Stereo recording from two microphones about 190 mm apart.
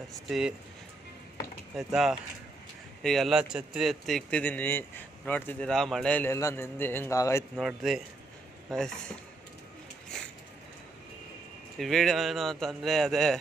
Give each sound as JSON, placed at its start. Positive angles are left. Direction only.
{"t": 0.3, "sound": "speech", "side_deg": -5}
{"t": 1.8, "sound": "speech", "side_deg": 0}
{"t": 7.5, "sound": "speech", "side_deg": 0}
{"t": 10.1, "sound": "a sound", "side_deg": 5}
{"t": 11.8, "sound": "speech", "side_deg": 0}